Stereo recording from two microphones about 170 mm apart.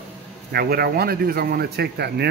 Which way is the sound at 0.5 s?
65° right (ahead or behind).